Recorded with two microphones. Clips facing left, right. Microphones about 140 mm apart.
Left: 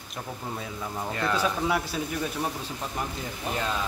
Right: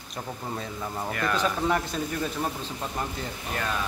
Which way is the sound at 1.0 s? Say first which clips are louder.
Even; 20° left (ahead or behind).